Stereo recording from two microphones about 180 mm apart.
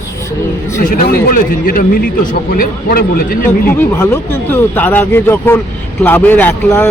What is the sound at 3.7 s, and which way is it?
A man's voice, 15° left (ahead or behind).